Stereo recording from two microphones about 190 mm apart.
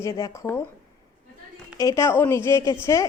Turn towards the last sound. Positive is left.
turn(degrees=15)  # may be behind; listen again after turning